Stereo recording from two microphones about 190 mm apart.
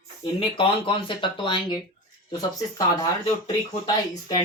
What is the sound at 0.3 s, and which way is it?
Speech, 30° left (ahead or behind).